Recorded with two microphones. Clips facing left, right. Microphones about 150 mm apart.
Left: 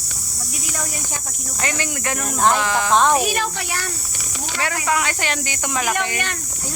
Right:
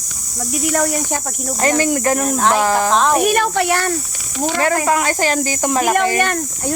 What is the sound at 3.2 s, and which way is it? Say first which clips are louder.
Speech: right 7 dB; 55° right (ahead or behind).